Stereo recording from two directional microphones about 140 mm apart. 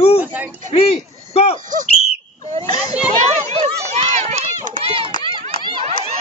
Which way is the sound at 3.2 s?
50° right (ahead or behind).